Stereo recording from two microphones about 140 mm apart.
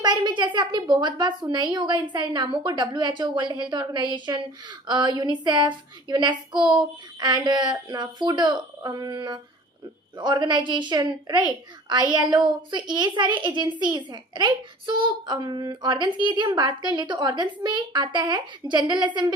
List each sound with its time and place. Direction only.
0.0 s a child's voice: 30° right (ahead or behind)